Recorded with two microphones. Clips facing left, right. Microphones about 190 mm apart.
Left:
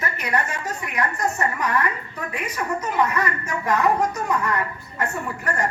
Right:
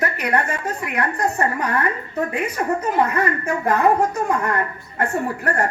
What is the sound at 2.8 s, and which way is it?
Speech, 35° right (ahead or behind).